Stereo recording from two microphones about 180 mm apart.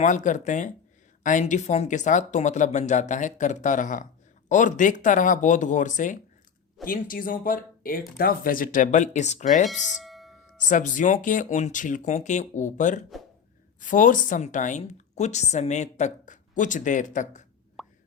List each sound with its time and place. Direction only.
0.0 s a woman's voice: 45° left (ahead or behind)
9.6 s music: centre (ahead or behind)
10.6 s a woman's voice: 45° left (ahead or behind)
17.8 s plop: centre (ahead or behind)